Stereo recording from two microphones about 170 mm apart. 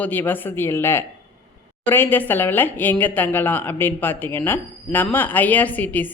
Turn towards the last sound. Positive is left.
turn(degrees=10)  # may be behind; listen again after turning